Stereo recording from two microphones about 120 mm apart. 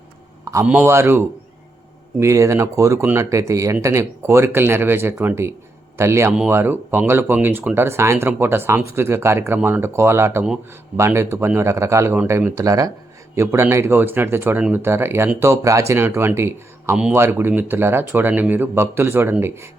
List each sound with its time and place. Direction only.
0.6 s speech: 15° right (ahead or behind)